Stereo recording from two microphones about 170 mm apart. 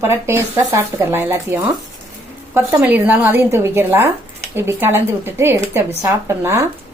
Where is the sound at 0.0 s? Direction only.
15° right (ahead or behind).